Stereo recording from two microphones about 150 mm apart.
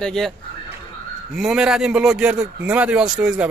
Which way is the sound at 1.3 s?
5° right (ahead or behind).